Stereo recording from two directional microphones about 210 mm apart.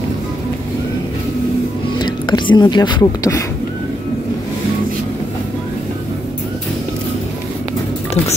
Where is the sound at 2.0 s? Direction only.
20° left (ahead or behind).